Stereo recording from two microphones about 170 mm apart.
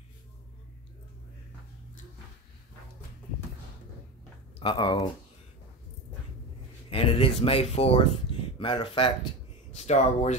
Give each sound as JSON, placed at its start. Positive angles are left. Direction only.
{"t": 4.6, "sound": "speech", "side_deg": 25}
{"t": 6.9, "sound": "speech", "side_deg": 35}
{"t": 9.8, "sound": "speech", "side_deg": 40}